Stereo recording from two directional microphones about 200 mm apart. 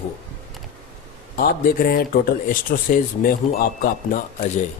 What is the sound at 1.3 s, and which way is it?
Speech, 45° left (ahead or behind).